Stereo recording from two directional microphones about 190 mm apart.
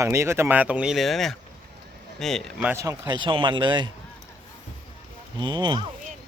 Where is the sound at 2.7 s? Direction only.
15° right (ahead or behind).